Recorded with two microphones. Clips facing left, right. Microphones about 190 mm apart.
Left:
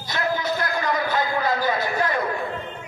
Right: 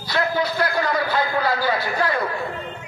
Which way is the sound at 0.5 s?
20° left (ahead or behind).